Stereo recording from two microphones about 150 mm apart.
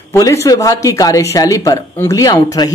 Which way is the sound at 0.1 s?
20° left (ahead or behind).